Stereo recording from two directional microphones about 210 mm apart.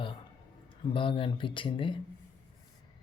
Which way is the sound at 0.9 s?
25° left (ahead or behind).